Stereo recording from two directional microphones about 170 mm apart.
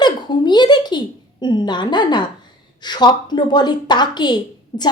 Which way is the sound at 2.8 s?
25° left (ahead or behind).